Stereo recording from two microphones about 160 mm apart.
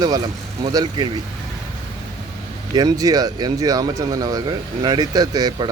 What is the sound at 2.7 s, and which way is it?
A man's voice, 25° right (ahead or behind).